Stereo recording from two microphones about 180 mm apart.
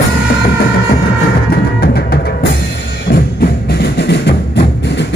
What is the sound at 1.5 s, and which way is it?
Music, 60° left (ahead or behind).